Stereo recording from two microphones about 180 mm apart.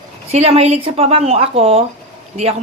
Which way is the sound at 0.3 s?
35° right (ahead or behind).